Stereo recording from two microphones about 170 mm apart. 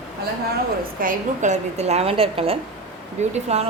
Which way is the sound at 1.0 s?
45° right (ahead or behind).